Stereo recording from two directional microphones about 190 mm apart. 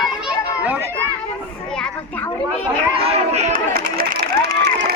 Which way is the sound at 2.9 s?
30° right (ahead or behind).